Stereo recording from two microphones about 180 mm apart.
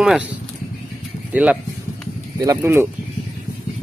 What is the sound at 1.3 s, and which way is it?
Speech, 10° right (ahead or behind).